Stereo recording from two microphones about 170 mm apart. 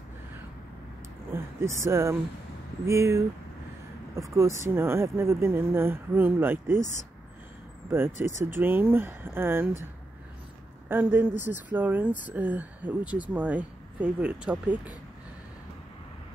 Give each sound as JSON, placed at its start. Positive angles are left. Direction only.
{"t": 1.3, "sound": "speech", "side_deg": -15}
{"t": 8.4, "sound": "speech", "side_deg": -15}
{"t": 10.9, "sound": "speech", "side_deg": -10}